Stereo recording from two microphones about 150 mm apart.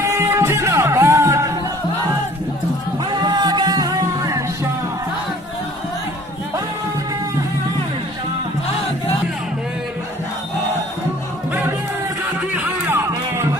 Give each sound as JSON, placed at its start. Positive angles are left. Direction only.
{"t": 0.0, "sound": "music", "side_deg": -20}
{"t": 3.1, "sound": "music", "side_deg": -30}
{"t": 12.4, "sound": "music", "side_deg": -10}